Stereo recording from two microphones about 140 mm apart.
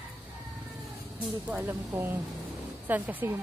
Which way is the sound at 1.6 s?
20° right (ahead or behind).